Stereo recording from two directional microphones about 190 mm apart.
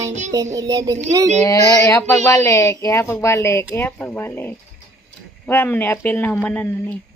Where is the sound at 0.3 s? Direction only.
20° right (ahead or behind).